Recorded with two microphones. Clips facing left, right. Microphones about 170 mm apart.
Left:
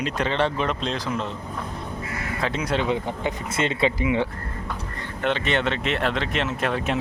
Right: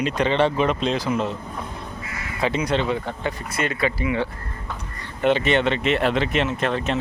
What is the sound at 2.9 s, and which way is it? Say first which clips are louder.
Speech: even; 20° left (ahead or behind).